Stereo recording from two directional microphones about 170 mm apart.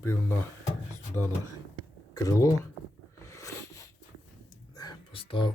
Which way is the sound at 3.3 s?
15° left (ahead or behind).